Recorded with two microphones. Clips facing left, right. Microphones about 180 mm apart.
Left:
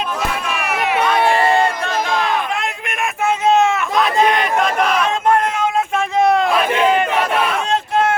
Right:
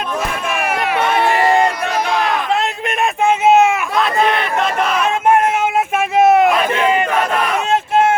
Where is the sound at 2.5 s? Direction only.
30° right (ahead or behind).